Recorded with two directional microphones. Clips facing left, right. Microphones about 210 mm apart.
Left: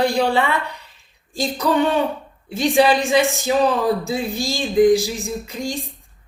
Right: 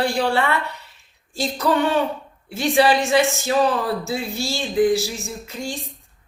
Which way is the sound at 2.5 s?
15° left (ahead or behind).